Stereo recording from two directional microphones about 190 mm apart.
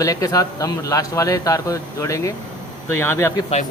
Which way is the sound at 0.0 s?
20° left (ahead or behind).